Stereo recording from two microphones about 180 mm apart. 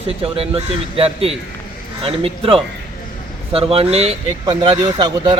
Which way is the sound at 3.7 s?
35° right (ahead or behind).